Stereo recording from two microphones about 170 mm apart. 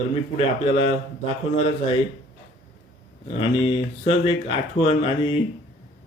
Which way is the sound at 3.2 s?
35° left (ahead or behind).